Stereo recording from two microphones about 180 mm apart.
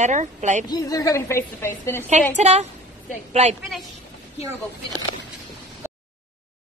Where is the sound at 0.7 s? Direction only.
20° left (ahead or behind).